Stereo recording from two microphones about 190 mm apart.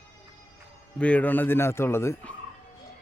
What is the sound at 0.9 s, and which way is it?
Speech, 5° left (ahead or behind).